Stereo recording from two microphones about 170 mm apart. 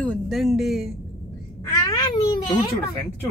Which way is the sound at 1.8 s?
20° left (ahead or behind).